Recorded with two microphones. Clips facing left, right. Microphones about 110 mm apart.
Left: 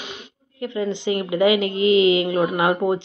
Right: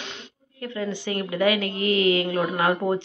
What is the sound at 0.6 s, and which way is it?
A woman's voice, 20° left (ahead or behind).